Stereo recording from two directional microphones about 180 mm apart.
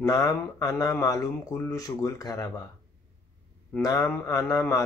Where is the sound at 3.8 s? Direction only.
20° left (ahead or behind).